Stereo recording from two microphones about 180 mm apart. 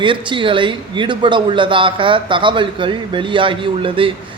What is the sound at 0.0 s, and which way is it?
A man's voice, 25° right (ahead or behind).